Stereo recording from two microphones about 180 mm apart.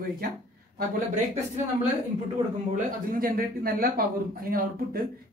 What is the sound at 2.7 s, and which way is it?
A man's voice, 50° right (ahead or behind).